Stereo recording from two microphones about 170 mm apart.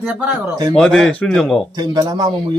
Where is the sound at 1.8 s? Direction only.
25° right (ahead or behind).